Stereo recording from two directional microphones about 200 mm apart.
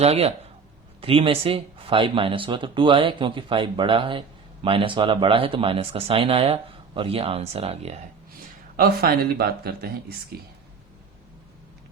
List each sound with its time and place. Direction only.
0.0 s speech: 30° right (ahead or behind)
8.7 s speech: 45° right (ahead or behind)